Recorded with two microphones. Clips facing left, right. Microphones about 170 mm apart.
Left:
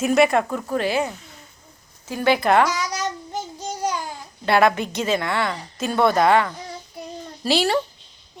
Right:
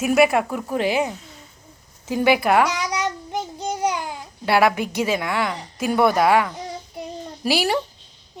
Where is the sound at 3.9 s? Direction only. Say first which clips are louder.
Right 2 dB; 15° right (ahead or behind).